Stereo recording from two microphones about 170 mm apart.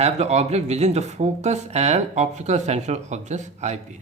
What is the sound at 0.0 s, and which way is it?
Speech, 40° right (ahead or behind).